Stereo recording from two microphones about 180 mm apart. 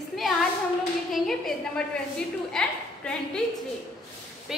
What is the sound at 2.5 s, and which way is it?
Speech, 5° left (ahead or behind).